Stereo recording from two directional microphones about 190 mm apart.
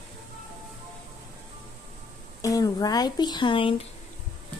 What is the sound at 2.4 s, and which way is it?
Speech, 20° left (ahead or behind).